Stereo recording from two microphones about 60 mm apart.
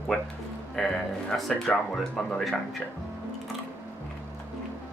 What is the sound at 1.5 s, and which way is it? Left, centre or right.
Speech, left.